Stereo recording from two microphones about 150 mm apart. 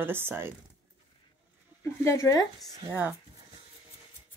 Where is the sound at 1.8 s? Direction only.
20° left (ahead or behind).